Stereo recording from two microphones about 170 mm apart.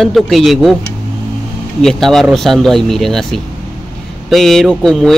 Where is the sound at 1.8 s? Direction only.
Centre (ahead or behind).